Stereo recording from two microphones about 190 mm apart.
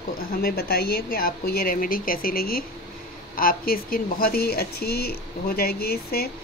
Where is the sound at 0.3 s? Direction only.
50° left (ahead or behind).